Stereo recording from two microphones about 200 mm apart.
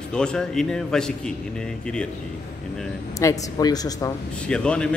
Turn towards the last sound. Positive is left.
turn(degrees=5)  # may be behind; listen again after turning